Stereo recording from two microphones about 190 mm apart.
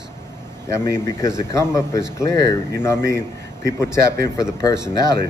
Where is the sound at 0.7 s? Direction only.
15° left (ahead or behind).